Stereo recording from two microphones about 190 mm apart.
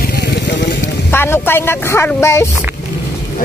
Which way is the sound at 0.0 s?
60° left (ahead or behind).